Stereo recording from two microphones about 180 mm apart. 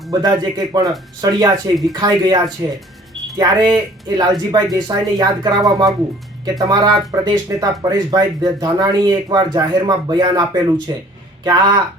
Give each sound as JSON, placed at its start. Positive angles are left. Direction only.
{"t": 0.1, "sound": "speech", "side_deg": -20}